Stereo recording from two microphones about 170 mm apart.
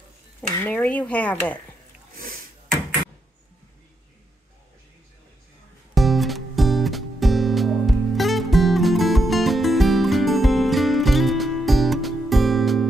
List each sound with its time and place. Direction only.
0.6 s dishes: 10° left (ahead or behind)
2.1 s a sound: 60° right (ahead or behind)
5.9 s music: centre (ahead or behind)